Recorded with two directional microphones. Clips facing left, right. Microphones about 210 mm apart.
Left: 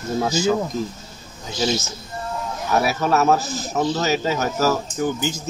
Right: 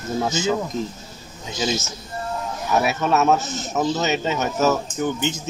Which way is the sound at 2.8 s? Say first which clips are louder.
Even; centre (ahead or behind).